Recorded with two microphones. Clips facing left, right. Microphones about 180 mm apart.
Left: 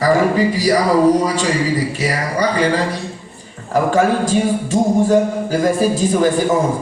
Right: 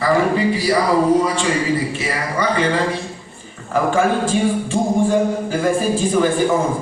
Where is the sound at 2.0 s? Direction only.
40° left (ahead or behind).